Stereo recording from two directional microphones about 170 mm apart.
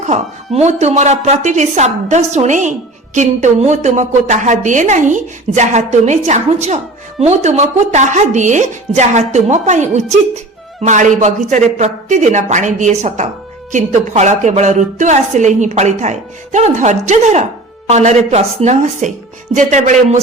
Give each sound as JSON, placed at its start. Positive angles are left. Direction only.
{"t": 0.0, "sound": "a woman's voice", "side_deg": -40}